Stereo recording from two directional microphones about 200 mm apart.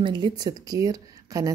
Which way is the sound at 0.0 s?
20° right (ahead or behind).